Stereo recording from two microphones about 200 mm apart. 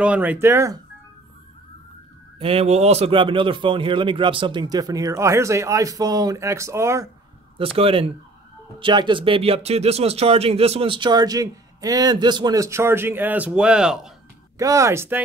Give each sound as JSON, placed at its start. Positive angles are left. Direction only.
{"t": 0.0, "sound": "speech", "side_deg": -5}
{"t": 2.3, "sound": "speech", "side_deg": -30}
{"t": 7.5, "sound": "speech", "side_deg": -30}
{"t": 14.6, "sound": "speech", "side_deg": -15}